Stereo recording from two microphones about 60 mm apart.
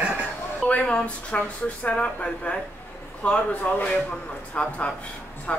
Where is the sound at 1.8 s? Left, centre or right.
Left.